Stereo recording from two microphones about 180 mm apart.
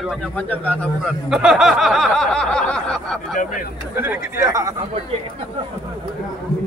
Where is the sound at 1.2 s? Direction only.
5° right (ahead or behind).